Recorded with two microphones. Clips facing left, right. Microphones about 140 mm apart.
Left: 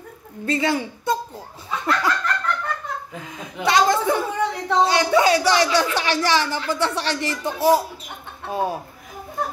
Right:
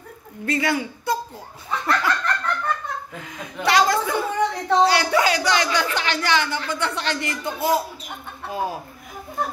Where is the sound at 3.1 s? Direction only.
20° left (ahead or behind); by 7.3 s 35° left (ahead or behind).